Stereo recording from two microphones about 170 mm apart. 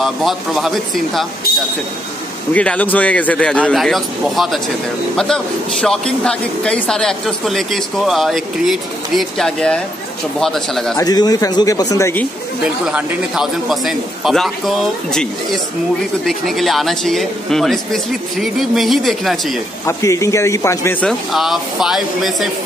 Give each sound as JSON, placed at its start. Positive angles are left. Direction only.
{"t": 0.0, "sound": "a man's voice", "side_deg": 0}
{"t": 2.5, "sound": "a man's voice", "side_deg": 10}
{"t": 11.0, "sound": "speech", "side_deg": 20}
{"t": 12.8, "sound": "a man's voice", "side_deg": -5}
{"t": 19.9, "sound": "speech", "side_deg": 20}